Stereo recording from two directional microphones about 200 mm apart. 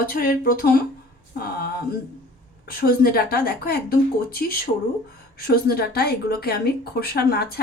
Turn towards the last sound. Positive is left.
turn(degrees=50)  # may be behind; listen again after turning